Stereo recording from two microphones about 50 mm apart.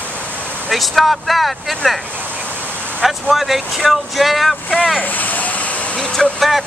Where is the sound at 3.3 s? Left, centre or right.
Centre.